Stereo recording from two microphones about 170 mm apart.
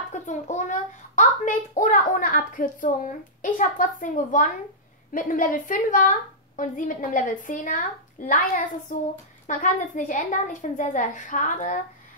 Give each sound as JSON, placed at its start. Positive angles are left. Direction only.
{"t": 0.1, "sound": "a child's voice", "side_deg": 45}